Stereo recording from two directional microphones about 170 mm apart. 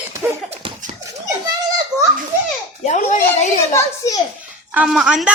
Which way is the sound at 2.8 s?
45° left (ahead or behind).